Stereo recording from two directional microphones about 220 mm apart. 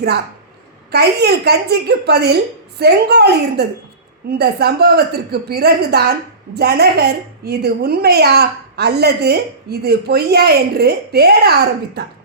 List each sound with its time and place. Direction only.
0.9 s a woman's voice: 45° right (ahead or behind)